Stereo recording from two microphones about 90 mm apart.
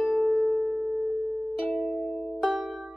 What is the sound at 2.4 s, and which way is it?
Music, 5° right (ahead or behind).